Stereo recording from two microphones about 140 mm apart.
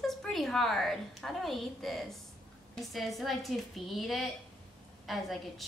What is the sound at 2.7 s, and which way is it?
A woman's voice, centre (ahead or behind).